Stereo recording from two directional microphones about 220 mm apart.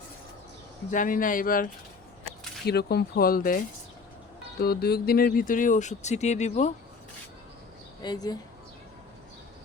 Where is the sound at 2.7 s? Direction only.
45° left (ahead or behind).